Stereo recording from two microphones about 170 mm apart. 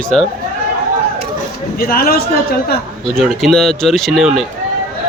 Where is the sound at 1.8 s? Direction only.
60° left (ahead or behind).